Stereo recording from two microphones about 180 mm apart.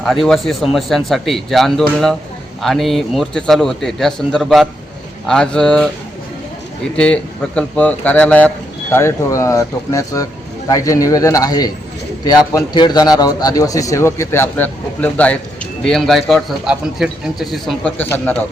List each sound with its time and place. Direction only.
0.0 s a man's voice: centre (ahead or behind)
6.9 s a man's voice: 5° left (ahead or behind)